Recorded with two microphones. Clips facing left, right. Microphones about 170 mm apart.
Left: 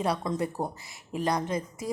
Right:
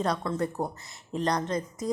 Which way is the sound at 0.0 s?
10° left (ahead or behind).